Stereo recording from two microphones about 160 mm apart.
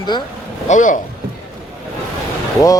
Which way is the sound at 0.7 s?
50° left (ahead or behind).